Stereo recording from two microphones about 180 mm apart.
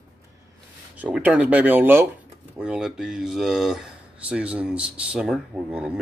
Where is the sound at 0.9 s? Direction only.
10° right (ahead or behind).